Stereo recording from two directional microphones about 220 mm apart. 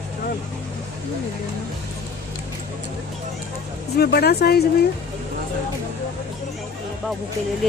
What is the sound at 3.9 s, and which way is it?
Speech, 45° left (ahead or behind).